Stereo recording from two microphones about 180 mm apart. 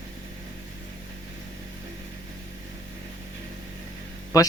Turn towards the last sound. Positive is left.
turn(degrees=20)  # may be behind; listen again after turning